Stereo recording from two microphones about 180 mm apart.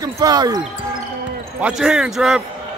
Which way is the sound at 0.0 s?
20° right (ahead or behind).